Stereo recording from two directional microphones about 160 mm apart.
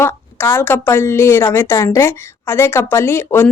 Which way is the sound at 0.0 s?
15° left (ahead or behind).